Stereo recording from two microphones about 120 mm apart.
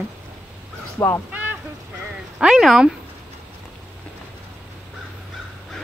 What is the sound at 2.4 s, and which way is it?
Speech, 5° right (ahead or behind).